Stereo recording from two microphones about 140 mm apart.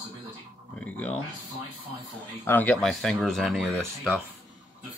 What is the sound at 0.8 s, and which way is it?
Speech, 10° left (ahead or behind).